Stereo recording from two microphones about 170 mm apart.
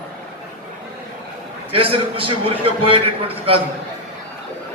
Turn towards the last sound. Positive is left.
turn(degrees=-35)  # may be behind; listen again after turning